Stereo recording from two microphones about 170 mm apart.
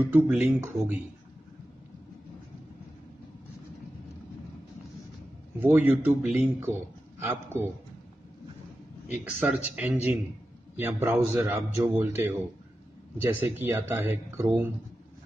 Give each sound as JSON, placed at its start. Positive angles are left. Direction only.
{"t": 0.0, "sound": "a man's voice", "side_deg": -10}
{"t": 5.6, "sound": "a man's voice", "side_deg": -10}
{"t": 9.2, "sound": "a man's voice", "side_deg": -5}